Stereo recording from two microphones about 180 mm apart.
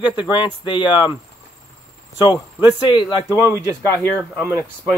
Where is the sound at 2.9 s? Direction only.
20° left (ahead or behind).